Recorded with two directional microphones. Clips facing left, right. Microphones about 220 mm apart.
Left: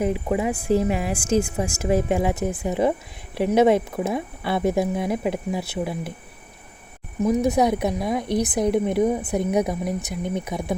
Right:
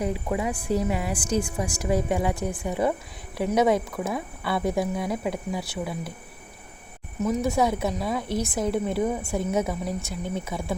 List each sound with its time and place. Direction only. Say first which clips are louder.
0.0 s speech: left 4 dB; 20° left (ahead or behind)
7.3 s a woman's voice: left 4 dB; 20° left (ahead or behind)